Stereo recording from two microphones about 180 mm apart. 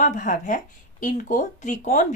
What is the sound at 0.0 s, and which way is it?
Speech, 45° left (ahead or behind).